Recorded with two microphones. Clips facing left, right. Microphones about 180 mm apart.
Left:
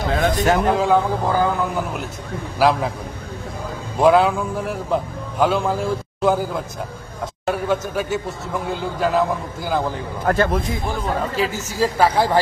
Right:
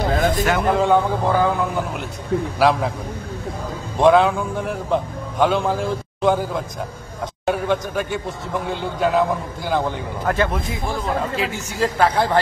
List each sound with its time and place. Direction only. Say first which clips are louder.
0.3 s a sound: left 2 dB; 40° left (ahead or behind)
0.6 s a man's voice: even; centre (ahead or behind)
4.0 s a man's voice: even; 5° left (ahead or behind)
10.2 s speech: left 2 dB; 40° left (ahead or behind)
11.8 s speech: left 1 dB; 5° left (ahead or behind)